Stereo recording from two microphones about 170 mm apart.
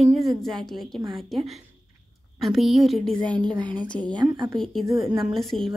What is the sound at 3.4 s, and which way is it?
Speech, 25° right (ahead or behind).